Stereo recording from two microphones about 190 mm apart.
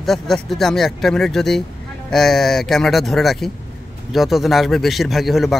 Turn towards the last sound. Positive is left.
turn(degrees=0)  # may be behind; listen again after turning